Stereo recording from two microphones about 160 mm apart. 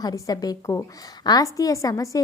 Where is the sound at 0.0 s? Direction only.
25° left (ahead or behind).